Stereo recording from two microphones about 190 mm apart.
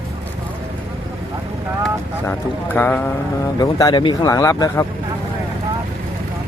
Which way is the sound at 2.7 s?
10° left (ahead or behind).